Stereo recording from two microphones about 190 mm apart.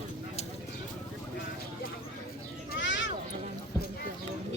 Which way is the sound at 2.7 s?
75° left (ahead or behind).